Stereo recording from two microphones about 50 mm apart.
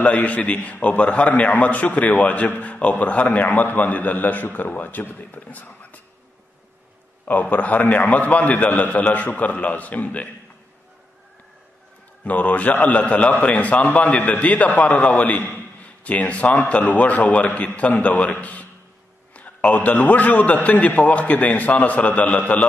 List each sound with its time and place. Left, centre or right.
0.0 s a man's voice: left
7.2 s a man's voice: left
12.3 s a man's voice: left
15.8 s a man's voice: left